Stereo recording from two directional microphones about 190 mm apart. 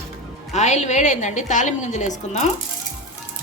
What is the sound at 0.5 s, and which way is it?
A woman's voice, 35° left (ahead or behind).